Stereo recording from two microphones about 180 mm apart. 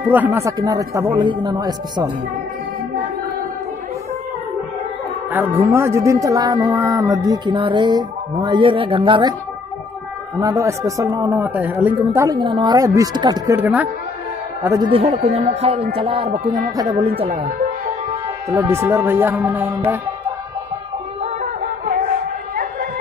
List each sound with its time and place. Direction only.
0.1 s speech: 10° right (ahead or behind)
5.3 s speech: 10° right (ahead or behind); by 9.3 s 25° right (ahead or behind)
10.4 s speech: 20° right (ahead or behind)
13.6 s speech: 10° right (ahead or behind)
14.9 s speech: 35° right (ahead or behind)
18.5 s speech: 15° right (ahead or behind)
21.2 s music: 40° right (ahead or behind)